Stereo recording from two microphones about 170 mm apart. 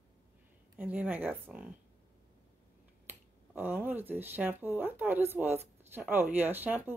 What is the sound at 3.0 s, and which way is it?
Speech, 10° right (ahead or behind).